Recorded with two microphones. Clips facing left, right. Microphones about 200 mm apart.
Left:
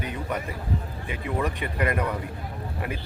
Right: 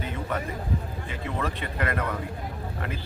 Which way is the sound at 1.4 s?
15° left (ahead or behind).